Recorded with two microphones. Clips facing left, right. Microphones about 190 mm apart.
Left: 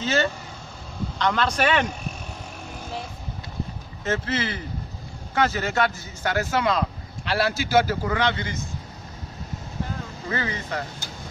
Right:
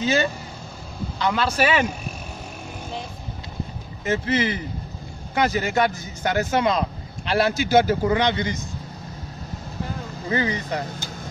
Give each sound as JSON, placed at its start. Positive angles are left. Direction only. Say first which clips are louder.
{"t": 0.0, "sound": "a man's voice", "louder": "right 2 dB", "side_deg": -15}
{"t": 4.0, "sound": "a man's voice", "louder": "right 4 dB", "side_deg": -15}
{"t": 10.3, "sound": "a man's voice", "louder": "right 5 dB", "side_deg": -15}